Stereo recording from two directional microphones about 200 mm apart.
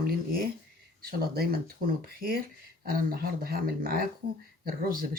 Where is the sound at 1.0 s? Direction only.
50° right (ahead or behind).